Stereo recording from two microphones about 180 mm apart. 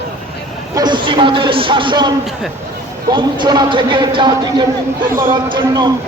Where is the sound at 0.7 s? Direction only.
25° right (ahead or behind).